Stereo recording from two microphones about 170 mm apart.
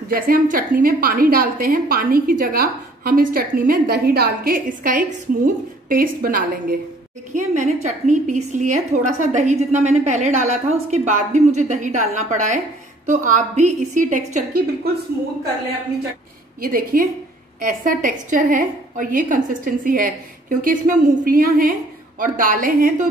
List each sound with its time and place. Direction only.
0.1 s a woman's voice: 55° right (ahead or behind)
7.3 s a woman's voice: 45° right (ahead or behind)
16.6 s a woman's voice: 55° right (ahead or behind)